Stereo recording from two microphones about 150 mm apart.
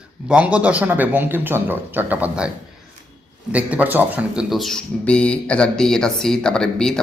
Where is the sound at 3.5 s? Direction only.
10° right (ahead or behind).